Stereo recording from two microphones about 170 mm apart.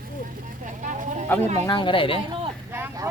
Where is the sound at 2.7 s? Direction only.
15° right (ahead or behind).